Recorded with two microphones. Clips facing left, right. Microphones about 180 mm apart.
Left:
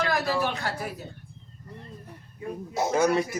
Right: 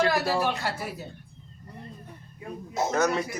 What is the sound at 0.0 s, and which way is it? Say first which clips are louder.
Speech: right 2 dB; 35° right (ahead or behind).